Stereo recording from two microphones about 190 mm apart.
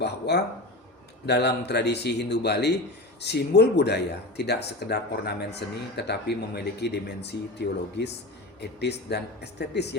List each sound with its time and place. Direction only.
0.0 s speech: 60° left (ahead or behind)